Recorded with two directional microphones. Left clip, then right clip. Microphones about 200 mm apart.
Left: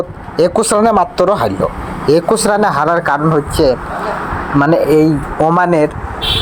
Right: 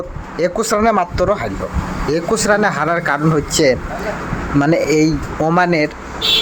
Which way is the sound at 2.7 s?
10° right (ahead or behind).